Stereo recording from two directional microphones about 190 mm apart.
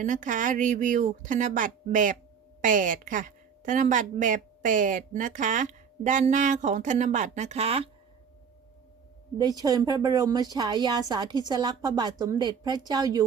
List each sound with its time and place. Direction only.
0.0 s a woman's voice: 45° right (ahead or behind)
9.4 s a woman's voice: 20° right (ahead or behind)